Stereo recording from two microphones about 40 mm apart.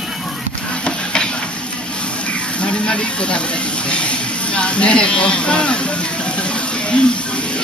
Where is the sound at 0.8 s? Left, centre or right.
Left.